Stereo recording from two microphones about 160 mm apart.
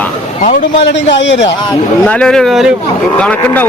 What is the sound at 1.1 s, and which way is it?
Speech, 90° left.